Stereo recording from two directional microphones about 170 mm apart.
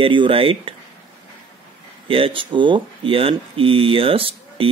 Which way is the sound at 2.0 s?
30° right (ahead or behind).